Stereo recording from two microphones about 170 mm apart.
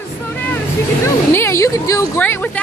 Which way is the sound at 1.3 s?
15° left (ahead or behind).